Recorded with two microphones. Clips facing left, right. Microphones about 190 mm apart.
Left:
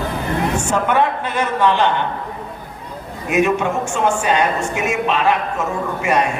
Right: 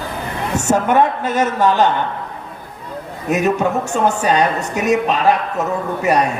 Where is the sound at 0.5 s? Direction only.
40° right (ahead or behind).